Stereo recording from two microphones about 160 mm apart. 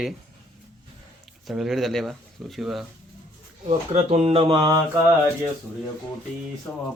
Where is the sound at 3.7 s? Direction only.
45° right (ahead or behind).